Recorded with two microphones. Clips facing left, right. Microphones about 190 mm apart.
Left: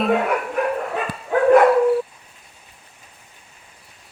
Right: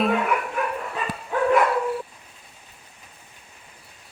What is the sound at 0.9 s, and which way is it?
Dog, 65° left (ahead or behind).